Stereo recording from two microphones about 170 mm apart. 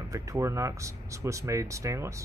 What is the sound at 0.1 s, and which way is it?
Speech, 20° right (ahead or behind).